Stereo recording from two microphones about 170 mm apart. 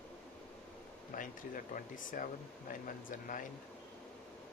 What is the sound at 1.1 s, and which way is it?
Speech, 55° left (ahead or behind).